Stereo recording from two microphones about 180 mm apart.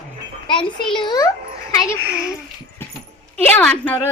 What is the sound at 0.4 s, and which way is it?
Speech, 25° left (ahead or behind).